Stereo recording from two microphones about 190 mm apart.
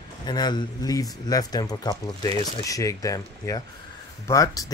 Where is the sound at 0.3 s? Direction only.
20° left (ahead or behind).